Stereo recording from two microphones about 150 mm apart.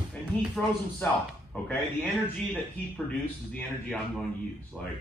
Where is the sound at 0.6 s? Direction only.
10° left (ahead or behind).